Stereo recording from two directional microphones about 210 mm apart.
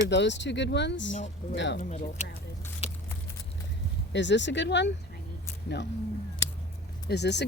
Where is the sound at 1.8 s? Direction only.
35° left (ahead or behind).